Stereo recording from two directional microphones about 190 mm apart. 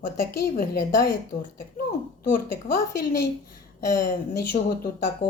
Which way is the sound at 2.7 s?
50° left (ahead or behind).